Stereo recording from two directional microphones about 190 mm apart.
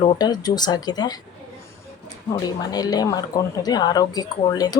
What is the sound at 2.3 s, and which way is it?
Speech, 20° left (ahead or behind).